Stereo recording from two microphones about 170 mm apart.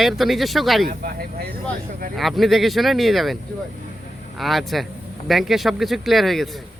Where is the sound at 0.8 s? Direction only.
60° right (ahead or behind).